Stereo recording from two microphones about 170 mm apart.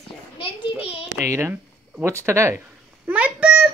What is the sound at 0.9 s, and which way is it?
Child singing, 40° left (ahead or behind).